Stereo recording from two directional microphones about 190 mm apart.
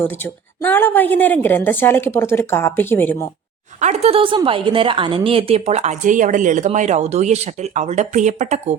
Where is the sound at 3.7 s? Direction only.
40° right (ahead or behind).